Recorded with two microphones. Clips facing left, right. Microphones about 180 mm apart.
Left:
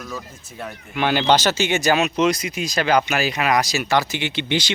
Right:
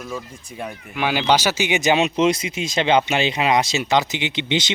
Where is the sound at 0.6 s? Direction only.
5° right (ahead or behind).